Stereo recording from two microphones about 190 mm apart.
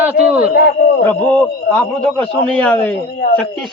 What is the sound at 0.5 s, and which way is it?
Speech, 55° left (ahead or behind).